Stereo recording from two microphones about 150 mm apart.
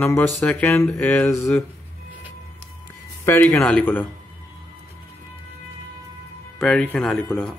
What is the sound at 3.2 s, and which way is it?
Speech, 15° left (ahead or behind).